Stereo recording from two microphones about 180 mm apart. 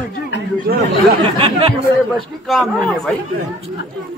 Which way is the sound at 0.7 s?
60° right (ahead or behind).